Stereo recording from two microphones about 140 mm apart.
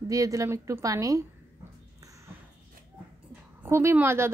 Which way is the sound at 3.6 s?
15° right (ahead or behind).